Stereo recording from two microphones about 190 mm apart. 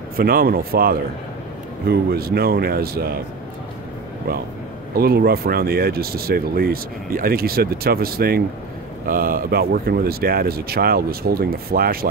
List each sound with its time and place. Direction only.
0.1 s speech: 50° right (ahead or behind)
4.9 s speech: 55° right (ahead or behind)